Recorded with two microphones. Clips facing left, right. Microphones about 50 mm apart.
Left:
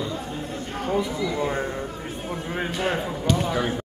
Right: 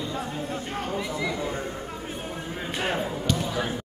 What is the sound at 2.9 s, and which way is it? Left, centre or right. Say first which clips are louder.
Speech: left 3 dB; centre.